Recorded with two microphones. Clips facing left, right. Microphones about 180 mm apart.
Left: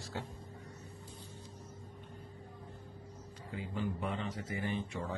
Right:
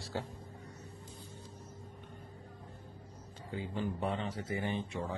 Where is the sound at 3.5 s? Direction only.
30° right (ahead or behind).